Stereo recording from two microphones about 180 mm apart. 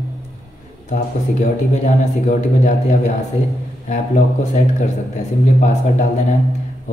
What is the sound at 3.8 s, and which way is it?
A man's voice, 40° left (ahead or behind).